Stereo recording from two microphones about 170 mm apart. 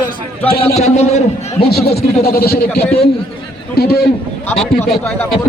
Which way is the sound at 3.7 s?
70° left (ahead or behind).